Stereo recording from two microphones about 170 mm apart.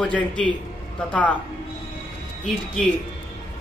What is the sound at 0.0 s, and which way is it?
Speech, 5° left (ahead or behind).